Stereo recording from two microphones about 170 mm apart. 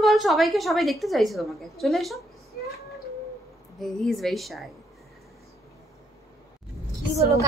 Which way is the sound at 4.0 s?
Centre (ahead or behind).